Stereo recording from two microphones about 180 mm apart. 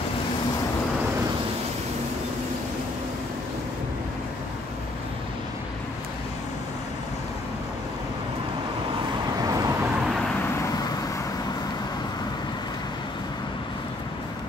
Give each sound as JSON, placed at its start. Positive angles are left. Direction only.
{"t": 9.4, "sound": "vehicle", "side_deg": -20}
{"t": 10.0, "sound": "vehicle", "side_deg": 0}